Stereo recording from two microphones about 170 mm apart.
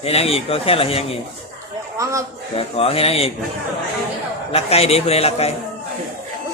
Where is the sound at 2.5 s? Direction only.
35° left (ahead or behind).